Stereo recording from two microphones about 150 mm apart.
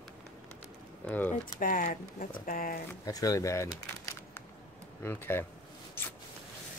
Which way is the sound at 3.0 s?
25° left (ahead or behind).